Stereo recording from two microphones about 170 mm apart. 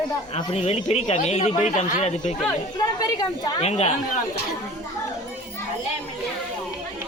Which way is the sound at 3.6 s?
40° left (ahead or behind).